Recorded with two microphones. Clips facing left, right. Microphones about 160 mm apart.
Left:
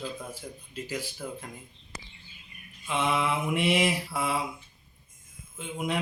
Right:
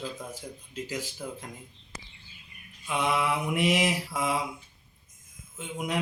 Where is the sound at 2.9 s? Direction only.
15° right (ahead or behind).